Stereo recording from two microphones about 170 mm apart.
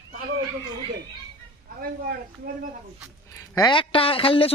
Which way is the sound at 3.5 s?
25° left (ahead or behind).